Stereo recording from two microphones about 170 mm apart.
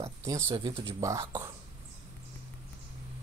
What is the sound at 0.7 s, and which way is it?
Speech, 30° right (ahead or behind).